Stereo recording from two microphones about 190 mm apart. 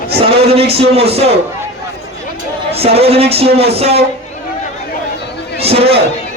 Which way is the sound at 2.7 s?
30° right (ahead or behind).